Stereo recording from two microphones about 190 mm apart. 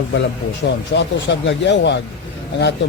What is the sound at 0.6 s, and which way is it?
Speech, 65° left (ahead or behind).